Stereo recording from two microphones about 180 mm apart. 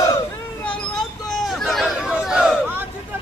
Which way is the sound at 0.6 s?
5° left (ahead or behind).